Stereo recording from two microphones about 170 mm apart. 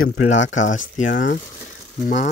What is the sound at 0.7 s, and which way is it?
Speech, 50° left (ahead or behind).